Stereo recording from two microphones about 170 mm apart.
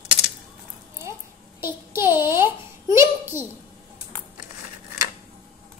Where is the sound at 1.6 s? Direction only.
15° right (ahead or behind).